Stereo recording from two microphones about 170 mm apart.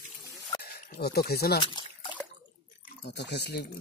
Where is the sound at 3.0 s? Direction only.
80° left.